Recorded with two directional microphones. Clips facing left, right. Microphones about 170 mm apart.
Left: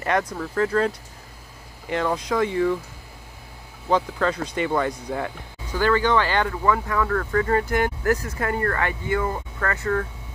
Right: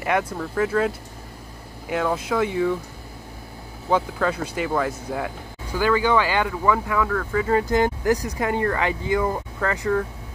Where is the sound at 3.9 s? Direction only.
10° right (ahead or behind).